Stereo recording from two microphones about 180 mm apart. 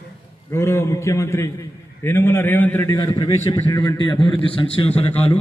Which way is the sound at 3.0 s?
25° left (ahead or behind).